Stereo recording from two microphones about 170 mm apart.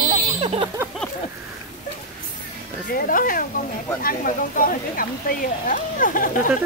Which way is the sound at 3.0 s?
55° left (ahead or behind).